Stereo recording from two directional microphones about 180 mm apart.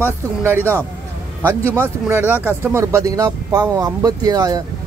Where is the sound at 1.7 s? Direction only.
15° right (ahead or behind).